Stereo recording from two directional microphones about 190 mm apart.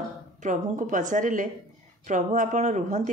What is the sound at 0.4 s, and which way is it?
A woman's voice, 40° right (ahead or behind).